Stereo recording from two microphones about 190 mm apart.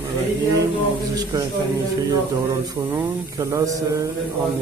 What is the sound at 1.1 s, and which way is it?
Speech, 20° right (ahead or behind).